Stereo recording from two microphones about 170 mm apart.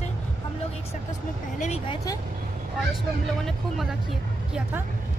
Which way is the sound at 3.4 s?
Centre (ahead or behind).